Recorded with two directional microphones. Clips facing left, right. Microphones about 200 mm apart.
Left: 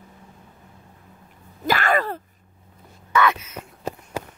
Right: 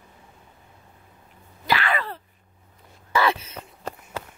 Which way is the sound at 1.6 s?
45° left (ahead or behind).